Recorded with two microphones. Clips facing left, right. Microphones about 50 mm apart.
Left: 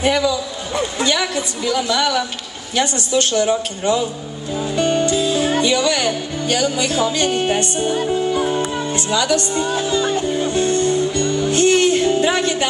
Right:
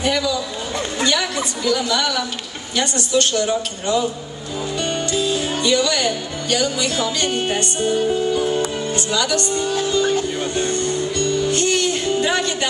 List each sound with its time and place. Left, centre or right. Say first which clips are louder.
0.0 s a man's voice: left 3 dB; left
4.6 s music: left 5 dB; left
5.1 s speech: left 4 dB; left
10.5 s speech: left 4 dB; right
10.8 s music: left 4 dB; left